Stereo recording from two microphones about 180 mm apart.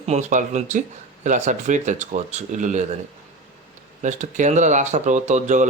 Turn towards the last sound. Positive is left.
turn(degrees=-40)  # may be behind; listen again after turning